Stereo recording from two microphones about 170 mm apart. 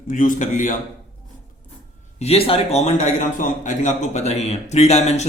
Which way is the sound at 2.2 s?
35° left (ahead or behind).